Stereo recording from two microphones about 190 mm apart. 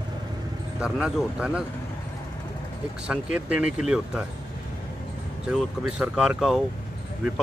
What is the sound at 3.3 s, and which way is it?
Speech, 5° right (ahead or behind).